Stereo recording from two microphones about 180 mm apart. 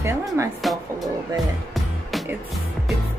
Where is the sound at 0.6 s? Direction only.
Centre (ahead or behind).